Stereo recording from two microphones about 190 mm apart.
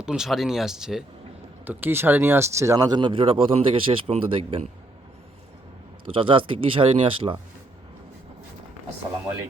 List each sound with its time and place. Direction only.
0.0 s speech: 5° right (ahead or behind); by 4.7 s 30° right (ahead or behind)
6.1 s speech: 25° right (ahead or behind)